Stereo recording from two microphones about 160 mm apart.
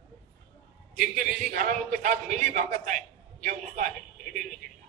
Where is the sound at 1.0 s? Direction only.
55° right (ahead or behind).